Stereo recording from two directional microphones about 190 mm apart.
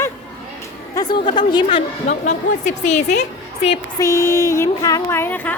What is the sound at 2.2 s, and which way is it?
Speech, 40° left (ahead or behind).